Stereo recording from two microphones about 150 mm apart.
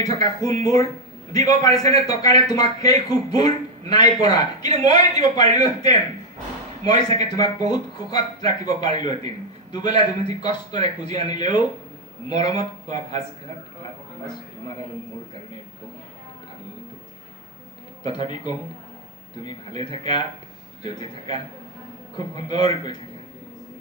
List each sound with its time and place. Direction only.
0.1 s speech: 25° left (ahead or behind)
18.0 s speech: 30° left (ahead or behind)
22.4 s speech: 30° left (ahead or behind)